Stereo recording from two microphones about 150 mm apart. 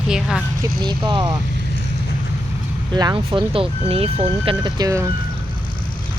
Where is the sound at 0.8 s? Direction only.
30° right (ahead or behind).